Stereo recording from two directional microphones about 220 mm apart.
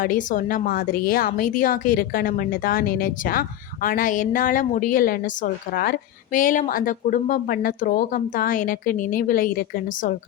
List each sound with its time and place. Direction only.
0.0 s a woman's voice: 40° left (ahead or behind)